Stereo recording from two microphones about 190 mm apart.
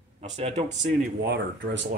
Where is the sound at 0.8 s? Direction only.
70° right (ahead or behind).